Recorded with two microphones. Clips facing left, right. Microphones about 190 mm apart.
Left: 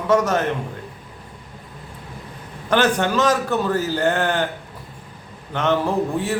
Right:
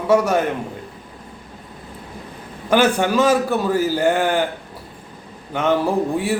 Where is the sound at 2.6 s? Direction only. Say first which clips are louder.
Right 2 dB; 10° right (ahead or behind).